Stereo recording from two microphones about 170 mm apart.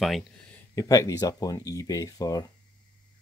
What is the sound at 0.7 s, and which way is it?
Speech, 20° left (ahead or behind).